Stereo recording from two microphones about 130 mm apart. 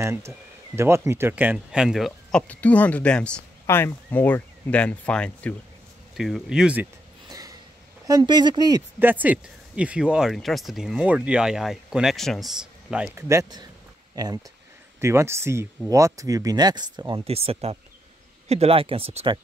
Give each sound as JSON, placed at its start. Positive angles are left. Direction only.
{"t": 0.0, "sound": "speech", "side_deg": -20}
{"t": 2.4, "sound": "speech", "side_deg": 10}
{"t": 6.1, "sound": "speech", "side_deg": 0}
{"t": 7.2, "sound": "a sound", "side_deg": -25}
{"t": 8.1, "sound": "speech", "side_deg": -35}
{"t": 9.0, "sound": "speech", "side_deg": -15}
{"t": 13.1, "sound": "speech", "side_deg": -25}
{"t": 17.2, "sound": "speech", "side_deg": -50}